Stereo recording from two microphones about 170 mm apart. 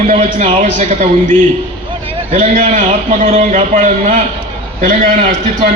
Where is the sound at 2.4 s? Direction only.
50° right (ahead or behind).